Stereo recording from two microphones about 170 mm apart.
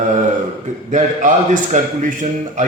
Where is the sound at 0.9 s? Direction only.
45° right (ahead or behind).